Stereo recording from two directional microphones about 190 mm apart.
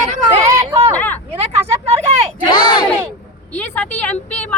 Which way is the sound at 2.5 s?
20° left (ahead or behind).